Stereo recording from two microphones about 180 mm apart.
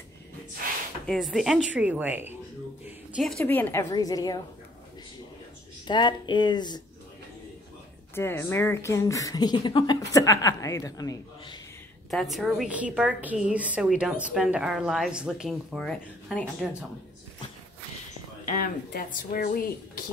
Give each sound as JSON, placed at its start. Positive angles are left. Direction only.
{"t": 1.0, "sound": "a woman's voice", "side_deg": 0}
{"t": 3.9, "sound": "a woman's voice", "side_deg": 20}
{"t": 5.9, "sound": "a woman's voice", "side_deg": 25}
{"t": 8.1, "sound": "a woman's voice", "side_deg": 10}
{"t": 12.1, "sound": "a woman's voice", "side_deg": 0}
{"t": 18.4, "sound": "speech", "side_deg": 50}